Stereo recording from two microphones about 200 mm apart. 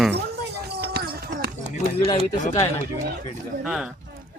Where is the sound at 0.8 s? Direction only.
50° right (ahead or behind).